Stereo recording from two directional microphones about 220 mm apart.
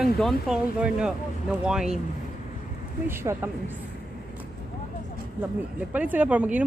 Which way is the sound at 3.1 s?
10° right (ahead or behind).